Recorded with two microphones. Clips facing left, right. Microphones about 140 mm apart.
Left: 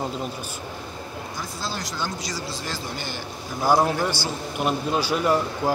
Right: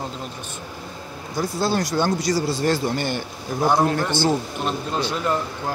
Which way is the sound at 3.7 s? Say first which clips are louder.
Left 1 dB; 10° left (ahead or behind).